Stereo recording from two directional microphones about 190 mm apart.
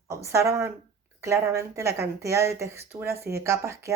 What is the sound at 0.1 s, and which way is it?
Speech, 15° right (ahead or behind).